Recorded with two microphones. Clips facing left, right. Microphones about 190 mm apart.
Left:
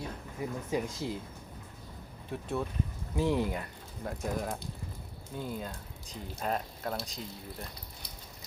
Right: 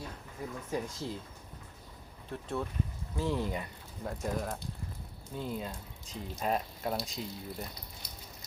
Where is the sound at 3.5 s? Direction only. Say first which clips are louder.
Even; centre (ahead or behind).